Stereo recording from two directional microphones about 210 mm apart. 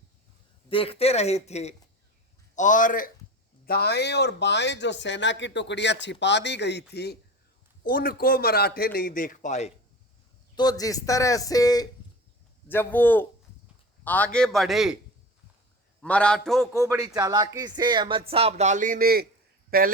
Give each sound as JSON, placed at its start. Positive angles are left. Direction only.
{"t": 0.7, "sound": "a man's voice", "side_deg": 25}
{"t": 10.5, "sound": "a man's voice", "side_deg": 20}
{"t": 16.0, "sound": "a man's voice", "side_deg": 5}
{"t": 16.7, "sound": "speech", "side_deg": -15}